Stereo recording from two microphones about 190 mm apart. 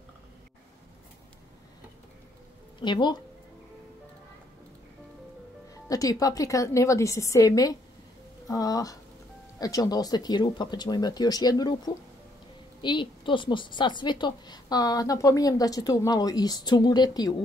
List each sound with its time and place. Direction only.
2.8 s a woman's voice: 25° left (ahead or behind)
5.9 s a woman's voice: 20° left (ahead or behind)